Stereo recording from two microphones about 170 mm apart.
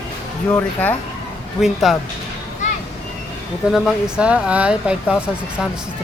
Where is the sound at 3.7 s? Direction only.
5° right (ahead or behind).